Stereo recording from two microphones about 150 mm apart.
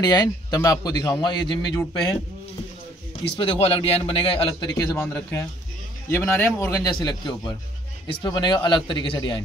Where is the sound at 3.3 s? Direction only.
35° left (ahead or behind).